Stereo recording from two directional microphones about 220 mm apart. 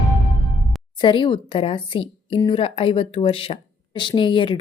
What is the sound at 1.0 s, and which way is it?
A woman's voice, 20° left (ahead or behind).